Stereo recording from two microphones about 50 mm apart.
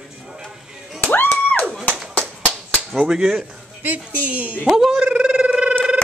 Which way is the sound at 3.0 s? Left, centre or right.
Centre.